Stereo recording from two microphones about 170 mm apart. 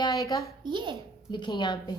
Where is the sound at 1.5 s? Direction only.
25° left (ahead or behind).